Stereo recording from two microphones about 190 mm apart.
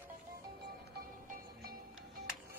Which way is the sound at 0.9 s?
50° right (ahead or behind).